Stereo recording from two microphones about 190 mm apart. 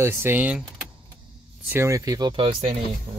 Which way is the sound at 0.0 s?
15° right (ahead or behind).